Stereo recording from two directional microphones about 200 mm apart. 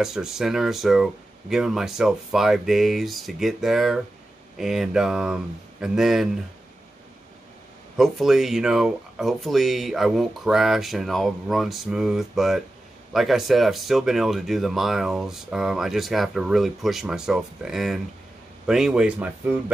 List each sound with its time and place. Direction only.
0.0 s speech: centre (ahead or behind)
8.0 s speech: centre (ahead or behind)